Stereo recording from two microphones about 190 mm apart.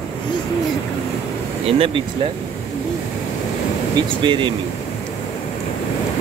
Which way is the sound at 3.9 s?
25° right (ahead or behind).